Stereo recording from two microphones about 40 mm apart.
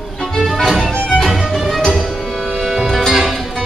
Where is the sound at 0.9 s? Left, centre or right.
Left.